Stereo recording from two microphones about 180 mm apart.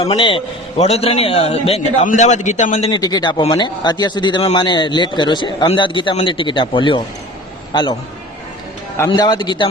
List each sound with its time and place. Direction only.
0.0 s a man's voice: 30° left (ahead or behind)
2.9 s a man's voice: 20° left (ahead or behind)
9.0 s a man's voice: 25° left (ahead or behind)